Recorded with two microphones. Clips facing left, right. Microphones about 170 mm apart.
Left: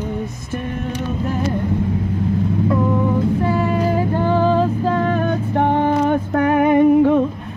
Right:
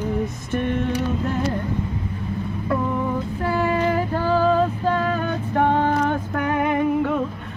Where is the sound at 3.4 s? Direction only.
20° left (ahead or behind).